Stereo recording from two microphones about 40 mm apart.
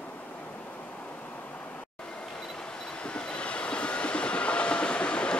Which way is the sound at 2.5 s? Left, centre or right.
Left.